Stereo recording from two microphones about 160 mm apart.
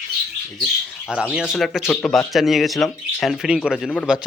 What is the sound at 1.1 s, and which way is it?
Speech, 5° right (ahead or behind).